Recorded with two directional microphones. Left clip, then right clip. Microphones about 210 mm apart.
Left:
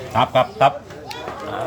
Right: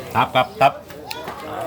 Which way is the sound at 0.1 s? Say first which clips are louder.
Left 1 dB; 20° right (ahead or behind).